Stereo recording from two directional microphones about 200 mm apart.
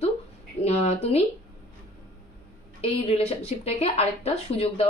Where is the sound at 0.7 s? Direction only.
30° left (ahead or behind).